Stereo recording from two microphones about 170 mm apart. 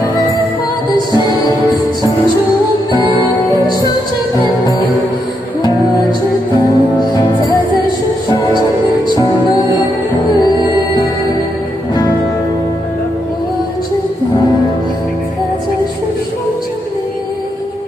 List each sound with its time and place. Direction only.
1.1 s music: 25° left (ahead or behind)
3.4 s music: 20° left (ahead or behind)
6.7 s music: 20° left (ahead or behind)
9.0 s music: 20° left (ahead or behind)